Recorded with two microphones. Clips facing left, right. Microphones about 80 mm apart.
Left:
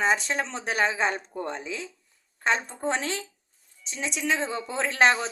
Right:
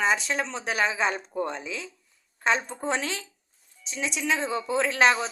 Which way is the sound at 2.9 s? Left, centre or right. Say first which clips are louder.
Even; left.